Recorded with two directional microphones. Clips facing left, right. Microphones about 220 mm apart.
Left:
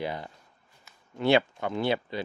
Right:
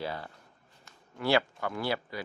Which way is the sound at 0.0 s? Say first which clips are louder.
Left 3 dB; 15° left (ahead or behind).